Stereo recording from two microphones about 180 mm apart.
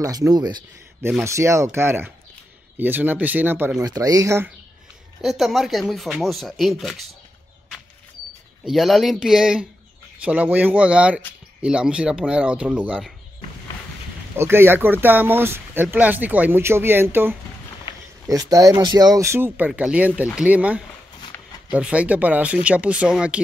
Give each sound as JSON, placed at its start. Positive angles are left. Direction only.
{"t": 0.0, "sound": "speech", "side_deg": -20}
{"t": 5.2, "sound": "speech", "side_deg": 0}
{"t": 8.6, "sound": "speech", "side_deg": 0}
{"t": 14.3, "sound": "speech", "side_deg": -15}